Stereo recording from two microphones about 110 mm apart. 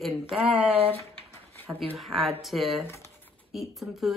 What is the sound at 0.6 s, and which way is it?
Speech, 60° right (ahead or behind).